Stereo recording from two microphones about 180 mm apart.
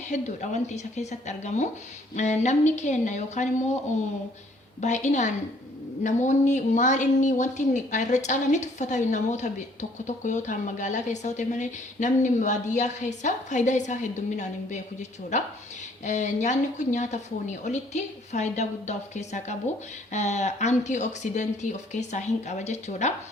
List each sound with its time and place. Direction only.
0.1 s a woman's voice: 40° left (ahead or behind)
4.8 s a woman's voice: 40° left (ahead or behind)